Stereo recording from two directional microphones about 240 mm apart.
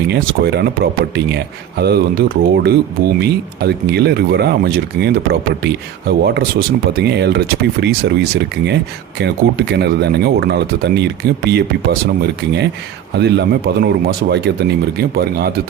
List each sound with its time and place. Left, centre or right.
0.1 s speech: right